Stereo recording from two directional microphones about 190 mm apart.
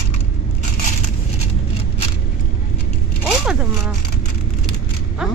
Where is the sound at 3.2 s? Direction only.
5° right (ahead or behind).